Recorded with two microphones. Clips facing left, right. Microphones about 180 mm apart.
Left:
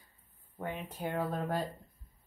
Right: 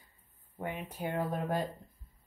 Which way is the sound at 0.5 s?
15° right (ahead or behind).